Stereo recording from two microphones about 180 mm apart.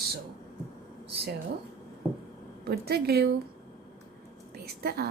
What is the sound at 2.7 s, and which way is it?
Speech, 60° right (ahead or behind).